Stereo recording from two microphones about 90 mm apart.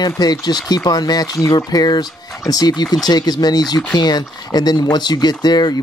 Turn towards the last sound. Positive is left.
turn(degrees=50)  # may be behind; listen again after turning